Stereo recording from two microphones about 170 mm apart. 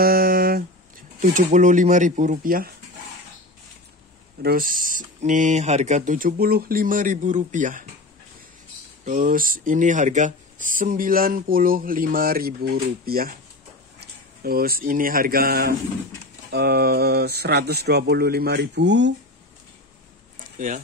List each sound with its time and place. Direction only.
0.0 s a sound: 60° right (ahead or behind)
1.2 s speech: 50° right (ahead or behind)
4.4 s speech: 60° right (ahead or behind)
9.0 s speech: 50° right (ahead or behind); by 19.1 s 90° right
20.5 s speech: 50° right (ahead or behind)